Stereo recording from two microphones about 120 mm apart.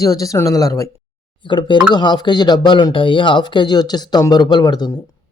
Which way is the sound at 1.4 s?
40° left (ahead or behind).